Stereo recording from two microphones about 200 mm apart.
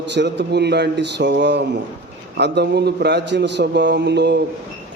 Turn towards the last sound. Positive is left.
turn(degrees=-60)  # may be behind; listen again after turning